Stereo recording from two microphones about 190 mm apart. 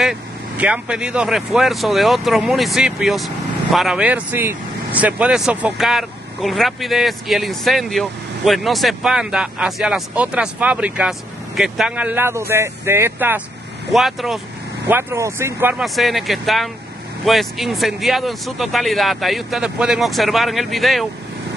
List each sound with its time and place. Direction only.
0.0 s speech: 5° right (ahead or behind)
13.9 s speech: centre (ahead or behind)
14.9 s speech: 10° right (ahead or behind)
15.8 s speech: centre (ahead or behind)